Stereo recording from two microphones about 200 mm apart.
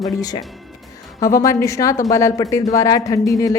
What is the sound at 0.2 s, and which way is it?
Speech, 20° left (ahead or behind).